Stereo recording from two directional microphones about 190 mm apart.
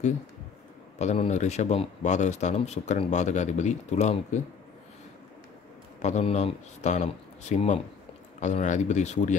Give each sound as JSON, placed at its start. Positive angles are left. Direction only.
{"t": 0.9, "sound": "a man's voice", "side_deg": 35}
{"t": 6.0, "sound": "a man's voice", "side_deg": 35}